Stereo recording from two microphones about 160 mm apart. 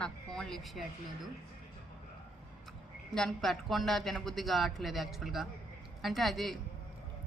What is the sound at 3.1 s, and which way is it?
A woman's voice, centre (ahead or behind).